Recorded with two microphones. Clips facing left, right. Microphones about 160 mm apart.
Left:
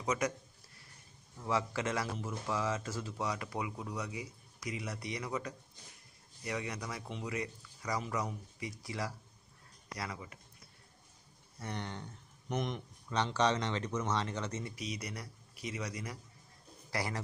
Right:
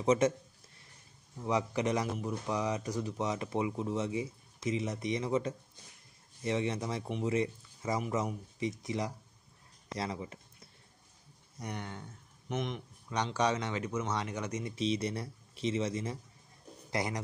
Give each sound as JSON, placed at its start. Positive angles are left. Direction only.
{"t": 0.0, "sound": "speech", "side_deg": -30}
{"t": 1.4, "sound": "speech", "side_deg": -20}
{"t": 11.6, "sound": "speech", "side_deg": -10}
{"t": 14.8, "sound": "speech", "side_deg": -25}